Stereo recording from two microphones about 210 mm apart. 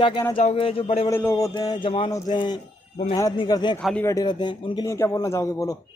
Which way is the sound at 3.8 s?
Centre (ahead or behind).